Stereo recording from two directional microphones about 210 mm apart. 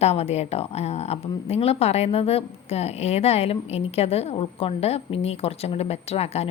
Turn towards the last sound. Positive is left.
turn(degrees=30)  # may be behind; listen again after turning